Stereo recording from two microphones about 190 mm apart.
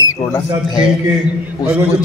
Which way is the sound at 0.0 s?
15° left (ahead or behind).